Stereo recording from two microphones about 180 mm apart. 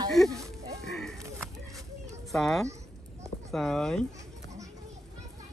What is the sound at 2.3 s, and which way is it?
A child's voice, centre (ahead or behind).